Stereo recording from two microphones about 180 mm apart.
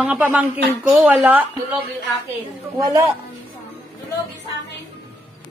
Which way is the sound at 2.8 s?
20° right (ahead or behind).